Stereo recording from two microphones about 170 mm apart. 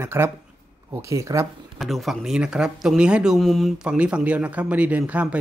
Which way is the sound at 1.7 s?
Centre (ahead or behind).